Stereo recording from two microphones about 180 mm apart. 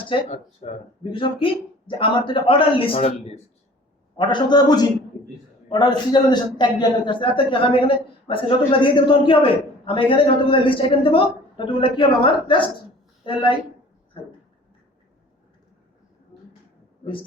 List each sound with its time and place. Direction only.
0.0 s a man's voice: 30° left (ahead or behind)